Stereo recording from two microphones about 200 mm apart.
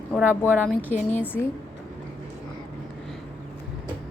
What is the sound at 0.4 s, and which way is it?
A woman's voice, 10° left (ahead or behind).